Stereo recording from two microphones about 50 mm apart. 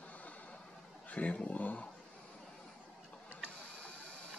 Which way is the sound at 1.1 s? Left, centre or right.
Left.